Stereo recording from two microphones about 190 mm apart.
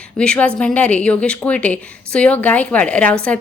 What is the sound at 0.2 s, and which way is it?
Speech, 5° left (ahead or behind).